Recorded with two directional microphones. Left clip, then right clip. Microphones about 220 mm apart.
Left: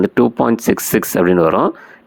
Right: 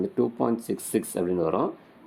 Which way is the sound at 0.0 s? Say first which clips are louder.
Left 12 dB; 40° left (ahead or behind).